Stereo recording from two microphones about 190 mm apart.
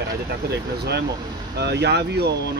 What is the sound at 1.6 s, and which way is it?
Speech, 60° right (ahead or behind).